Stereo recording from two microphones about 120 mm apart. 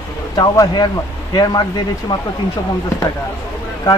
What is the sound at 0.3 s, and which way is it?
Speech, 30° left (ahead or behind).